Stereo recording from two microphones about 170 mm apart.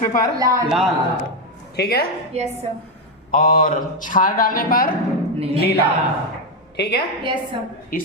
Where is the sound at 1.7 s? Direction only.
70° left (ahead or behind).